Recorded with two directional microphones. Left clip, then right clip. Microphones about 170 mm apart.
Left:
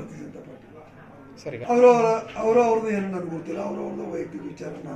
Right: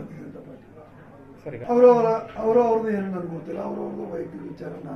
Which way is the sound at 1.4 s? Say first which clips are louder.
Right 1 dB; 10° left (ahead or behind).